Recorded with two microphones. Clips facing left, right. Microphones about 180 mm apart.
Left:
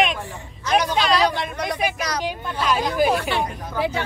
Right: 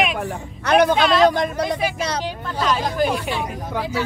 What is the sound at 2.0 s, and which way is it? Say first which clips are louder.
Speech: right 2 dB; 30° right (ahead or behind).